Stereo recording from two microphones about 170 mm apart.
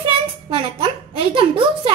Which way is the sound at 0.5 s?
35° right (ahead or behind).